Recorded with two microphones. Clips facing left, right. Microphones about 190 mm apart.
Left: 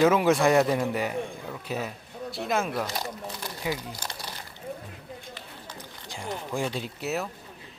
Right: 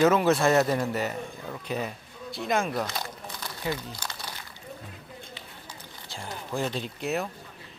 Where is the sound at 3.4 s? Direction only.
10° left (ahead or behind).